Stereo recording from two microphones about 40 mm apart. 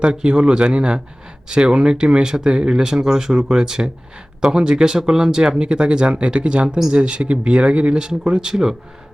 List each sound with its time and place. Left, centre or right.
0.0 s speech: right